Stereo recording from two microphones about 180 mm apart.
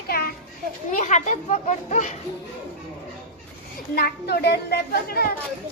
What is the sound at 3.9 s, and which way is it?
A child's voice, 60° left (ahead or behind).